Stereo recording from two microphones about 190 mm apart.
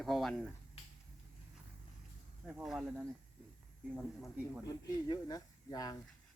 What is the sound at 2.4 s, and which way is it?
Speech, 5° right (ahead or behind).